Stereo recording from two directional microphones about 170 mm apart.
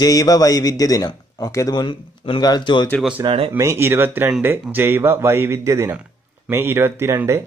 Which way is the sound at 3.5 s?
15° right (ahead or behind).